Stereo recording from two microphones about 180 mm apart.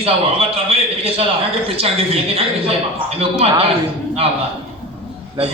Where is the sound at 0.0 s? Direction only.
35° right (ahead or behind).